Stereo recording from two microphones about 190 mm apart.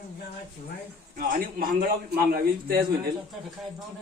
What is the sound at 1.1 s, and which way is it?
A man's voice, 50° right (ahead or behind).